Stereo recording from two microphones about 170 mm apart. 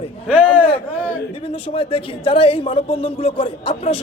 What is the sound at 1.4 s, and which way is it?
A man's voice, 35° left (ahead or behind).